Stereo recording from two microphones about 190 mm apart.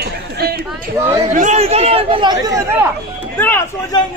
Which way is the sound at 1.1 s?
40° right (ahead or behind).